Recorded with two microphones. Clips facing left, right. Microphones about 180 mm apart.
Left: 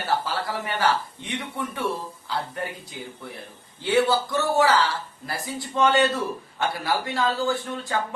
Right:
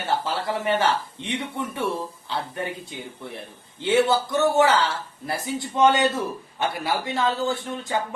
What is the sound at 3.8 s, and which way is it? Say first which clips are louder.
A man's voice: right 1 dB; 20° right (ahead or behind).